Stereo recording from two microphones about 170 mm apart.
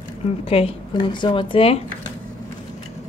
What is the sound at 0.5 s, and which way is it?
A woman's voice, 35° left (ahead or behind).